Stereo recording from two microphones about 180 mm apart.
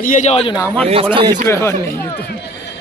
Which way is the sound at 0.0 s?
45° left (ahead or behind).